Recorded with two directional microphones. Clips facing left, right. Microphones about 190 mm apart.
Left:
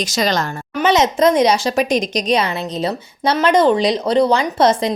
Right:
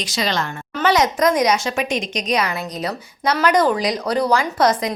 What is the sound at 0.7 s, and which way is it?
A woman's voice, 20° left (ahead or behind).